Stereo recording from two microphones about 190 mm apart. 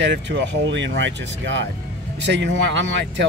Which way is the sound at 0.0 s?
70° right (ahead or behind).